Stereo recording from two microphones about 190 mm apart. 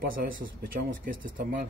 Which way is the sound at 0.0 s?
50° right (ahead or behind).